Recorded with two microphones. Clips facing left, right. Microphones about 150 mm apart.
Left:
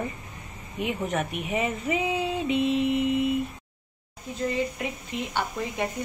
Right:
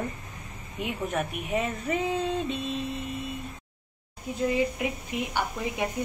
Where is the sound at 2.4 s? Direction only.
85° left.